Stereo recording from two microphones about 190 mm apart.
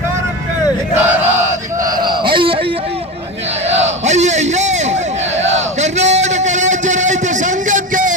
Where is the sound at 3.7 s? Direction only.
35° right (ahead or behind).